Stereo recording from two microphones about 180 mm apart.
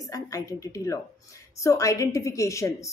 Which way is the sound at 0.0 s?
20° left (ahead or behind).